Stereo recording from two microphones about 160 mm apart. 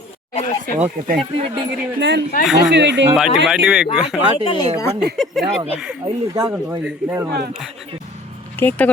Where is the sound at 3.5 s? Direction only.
5° right (ahead or behind).